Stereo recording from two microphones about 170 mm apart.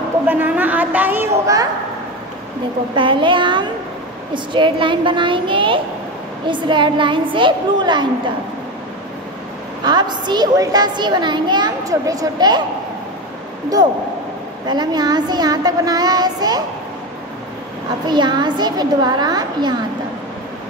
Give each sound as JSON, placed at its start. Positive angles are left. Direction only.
{"t": 0.3, "sound": "a woman's voice", "side_deg": -10}
{"t": 3.0, "sound": "a woman's voice", "side_deg": -30}
{"t": 9.8, "sound": "a woman's voice", "side_deg": -25}
{"t": 13.8, "sound": "a woman's voice", "side_deg": -25}
{"t": 18.0, "sound": "a woman's voice", "side_deg": -25}